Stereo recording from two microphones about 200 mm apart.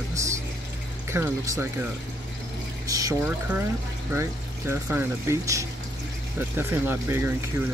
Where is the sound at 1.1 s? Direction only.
10° right (ahead or behind).